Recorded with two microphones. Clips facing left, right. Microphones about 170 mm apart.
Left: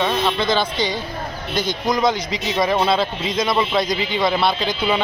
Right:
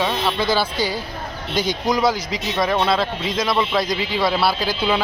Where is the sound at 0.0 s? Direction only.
10° right (ahead or behind).